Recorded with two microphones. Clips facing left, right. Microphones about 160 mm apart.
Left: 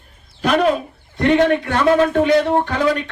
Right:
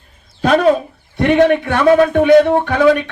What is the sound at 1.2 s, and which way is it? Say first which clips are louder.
A man's voice: right 3 dB; 60° right (ahead or behind).